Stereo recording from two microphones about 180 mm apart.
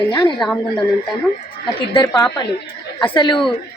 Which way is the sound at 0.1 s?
20° left (ahead or behind).